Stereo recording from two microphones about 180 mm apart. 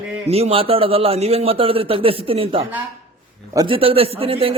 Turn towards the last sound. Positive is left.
turn(degrees=-30)  # may be behind; listen again after turning